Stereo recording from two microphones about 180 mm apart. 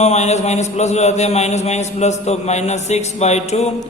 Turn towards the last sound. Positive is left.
turn(degrees=35)  # may be behind; listen again after turning